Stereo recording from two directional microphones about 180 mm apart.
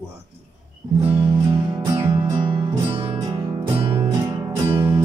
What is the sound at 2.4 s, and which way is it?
Music, 25° right (ahead or behind).